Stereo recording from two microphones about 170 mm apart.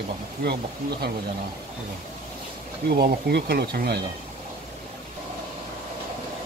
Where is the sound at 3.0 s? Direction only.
70° right (ahead or behind).